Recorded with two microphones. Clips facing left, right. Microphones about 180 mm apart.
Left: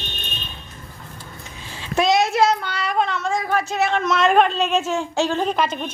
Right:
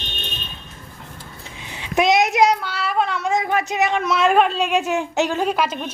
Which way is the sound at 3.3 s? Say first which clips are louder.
Right 2 dB; 20° right (ahead or behind).